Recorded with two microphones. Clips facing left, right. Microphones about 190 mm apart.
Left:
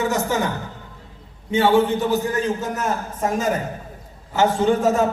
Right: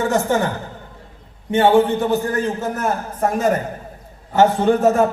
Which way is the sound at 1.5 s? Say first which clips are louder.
Right 3 dB; 55° right (ahead or behind).